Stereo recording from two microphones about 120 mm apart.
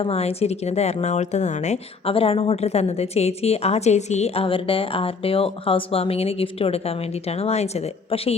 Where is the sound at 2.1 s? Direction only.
50° left (ahead or behind).